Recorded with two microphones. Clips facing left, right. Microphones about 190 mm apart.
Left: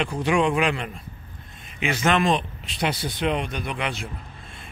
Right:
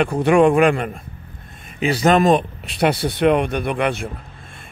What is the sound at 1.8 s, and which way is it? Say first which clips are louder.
Speech: right 6 dB; 35° right (ahead or behind).